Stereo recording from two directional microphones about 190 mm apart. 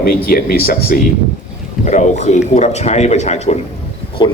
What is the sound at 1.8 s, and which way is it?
A man's voice, 40° left (ahead or behind).